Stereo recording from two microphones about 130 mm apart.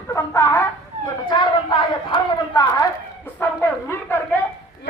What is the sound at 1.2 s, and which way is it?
A woman's voice, 40° left (ahead or behind).